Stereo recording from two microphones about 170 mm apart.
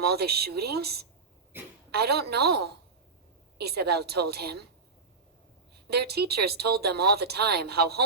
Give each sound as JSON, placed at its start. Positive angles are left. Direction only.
{"t": 0.0, "sound": "speech", "side_deg": -70}
{"t": 1.5, "sound": "a woman's voice", "side_deg": -10}
{"t": 1.9, "sound": "speech", "side_deg": -70}
{"t": 5.9, "sound": "speech", "side_deg": -70}